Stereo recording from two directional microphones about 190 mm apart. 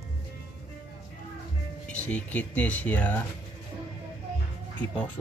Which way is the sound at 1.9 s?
10° left (ahead or behind).